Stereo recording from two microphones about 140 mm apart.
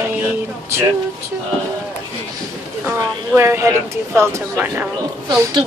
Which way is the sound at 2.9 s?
20° right (ahead or behind).